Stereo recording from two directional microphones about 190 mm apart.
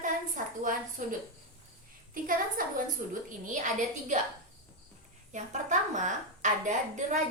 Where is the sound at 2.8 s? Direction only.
45° right (ahead or behind).